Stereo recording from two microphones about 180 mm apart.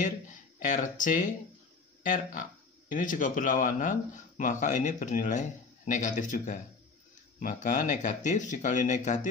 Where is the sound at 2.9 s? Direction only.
45° left (ahead or behind).